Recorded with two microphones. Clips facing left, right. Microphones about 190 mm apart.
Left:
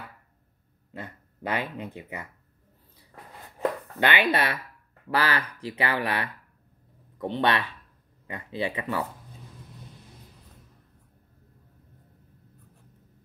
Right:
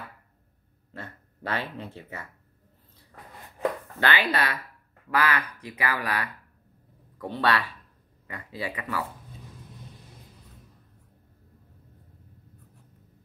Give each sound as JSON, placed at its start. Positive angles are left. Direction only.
{"t": 0.9, "sound": "speech", "side_deg": 15}
{"t": 4.0, "sound": "speech", "side_deg": 20}